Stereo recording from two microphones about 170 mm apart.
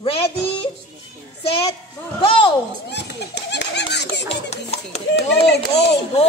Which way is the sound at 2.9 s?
90° left.